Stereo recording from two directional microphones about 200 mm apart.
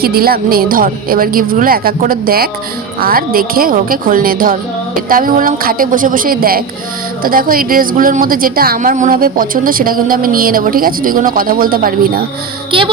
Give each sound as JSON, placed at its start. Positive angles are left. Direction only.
{"t": 0.0, "sound": "a woman's voice", "side_deg": -50}